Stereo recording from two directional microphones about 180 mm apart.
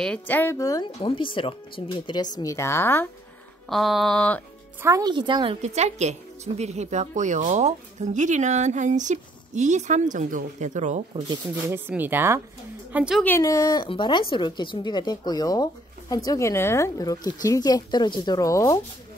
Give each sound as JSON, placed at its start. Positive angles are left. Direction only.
{"t": 0.0, "sound": "speech", "side_deg": 5}
{"t": 0.9, "sound": "speech", "side_deg": 30}
{"t": 3.6, "sound": "mantra", "side_deg": 0}
{"t": 4.8, "sound": "a woman's voice", "side_deg": -20}
{"t": 11.5, "sound": "speech", "side_deg": -10}
{"t": 12.9, "sound": "mantra", "side_deg": -5}
{"t": 13.2, "sound": "speech", "side_deg": 15}